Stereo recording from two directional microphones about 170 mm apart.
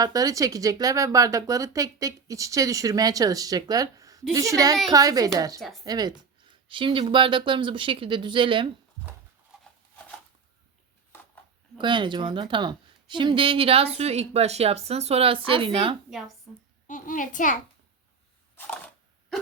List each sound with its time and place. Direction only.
0.0 s speech: 20° right (ahead or behind)
5.5 s speech: centre (ahead or behind)
5.8 s speech: 25° right (ahead or behind)
11.1 s a sound: 15° left (ahead or behind)
11.8 s a woman's voice: 30° right (ahead or behind)
16.0 s speech: centre (ahead or behind)
16.8 s a child's voice: 50° left (ahead or behind)
18.6 s camera: 10° left (ahead or behind)